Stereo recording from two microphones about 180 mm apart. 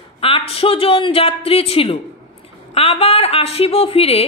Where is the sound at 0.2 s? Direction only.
30° left (ahead or behind).